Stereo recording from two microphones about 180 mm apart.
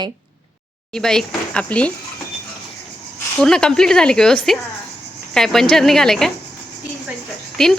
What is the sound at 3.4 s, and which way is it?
A woman's voice, 5° left (ahead or behind).